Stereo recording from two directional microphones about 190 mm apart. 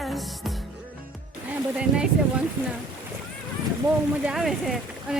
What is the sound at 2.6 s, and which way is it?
Speech, 10° right (ahead or behind).